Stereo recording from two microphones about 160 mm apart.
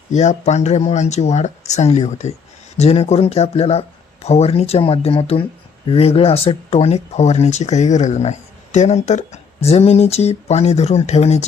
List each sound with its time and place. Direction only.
0.1 s speech: 45° left (ahead or behind)